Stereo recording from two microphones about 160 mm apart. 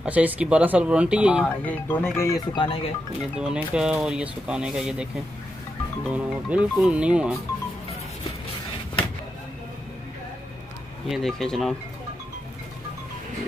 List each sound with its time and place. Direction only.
0.0 s speech: 10° right (ahead or behind)
1.7 s speech: 10° left (ahead or behind); by 2.8 s 30° left (ahead or behind)
3.3 s speech: 5° right (ahead or behind)
6.1 s speech: 10° right (ahead or behind)
11.1 s speech: centre (ahead or behind)